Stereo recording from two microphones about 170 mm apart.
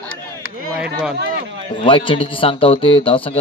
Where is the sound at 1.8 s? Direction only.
30° left (ahead or behind).